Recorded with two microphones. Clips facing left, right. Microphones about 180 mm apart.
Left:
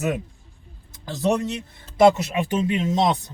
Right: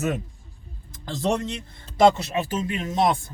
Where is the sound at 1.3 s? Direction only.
10° left (ahead or behind).